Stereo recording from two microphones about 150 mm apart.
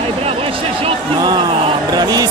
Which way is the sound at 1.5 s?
35° right (ahead or behind).